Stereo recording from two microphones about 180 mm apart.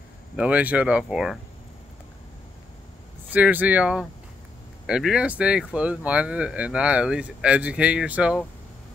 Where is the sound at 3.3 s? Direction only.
10° right (ahead or behind).